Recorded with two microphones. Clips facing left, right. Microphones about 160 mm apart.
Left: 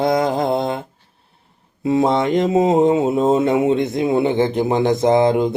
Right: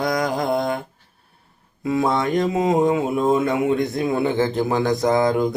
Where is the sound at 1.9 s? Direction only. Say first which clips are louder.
Left 4 dB; 25° left (ahead or behind).